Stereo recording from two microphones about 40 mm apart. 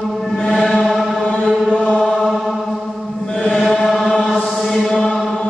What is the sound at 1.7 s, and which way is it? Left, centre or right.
Chant, centre.